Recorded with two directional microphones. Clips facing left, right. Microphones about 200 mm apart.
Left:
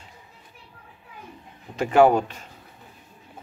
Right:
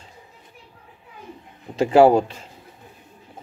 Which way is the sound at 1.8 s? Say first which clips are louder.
Right 3 dB; 30° right (ahead or behind).